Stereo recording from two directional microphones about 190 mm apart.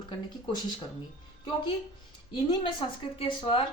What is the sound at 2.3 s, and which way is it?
A woman's voice, 25° left (ahead or behind).